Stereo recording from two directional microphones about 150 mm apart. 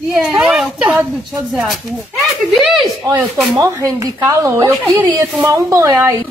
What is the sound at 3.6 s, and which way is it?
A woman's voice, 20° right (ahead or behind).